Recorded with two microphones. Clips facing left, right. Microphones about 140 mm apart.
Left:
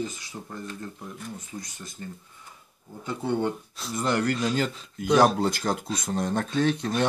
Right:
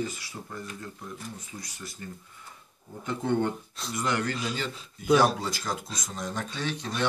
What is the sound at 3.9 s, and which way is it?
Speech, 35° left (ahead or behind).